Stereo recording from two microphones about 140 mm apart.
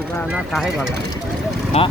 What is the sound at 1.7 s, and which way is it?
Speech, 50° left (ahead or behind).